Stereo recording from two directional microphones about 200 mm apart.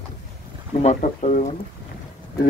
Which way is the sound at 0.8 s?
35° left (ahead or behind).